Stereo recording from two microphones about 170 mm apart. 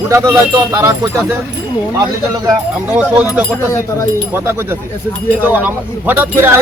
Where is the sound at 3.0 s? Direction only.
5° right (ahead or behind).